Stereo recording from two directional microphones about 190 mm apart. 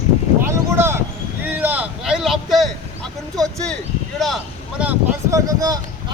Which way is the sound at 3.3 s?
Centre (ahead or behind).